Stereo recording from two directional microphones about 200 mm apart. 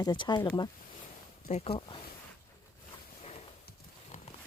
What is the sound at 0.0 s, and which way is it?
Speech, 20° left (ahead or behind).